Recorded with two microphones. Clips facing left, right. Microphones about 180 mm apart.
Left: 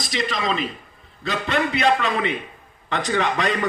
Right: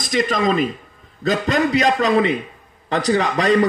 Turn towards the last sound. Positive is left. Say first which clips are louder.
# right 6 dB
turn(degrees=-35)  # may be behind; listen again after turning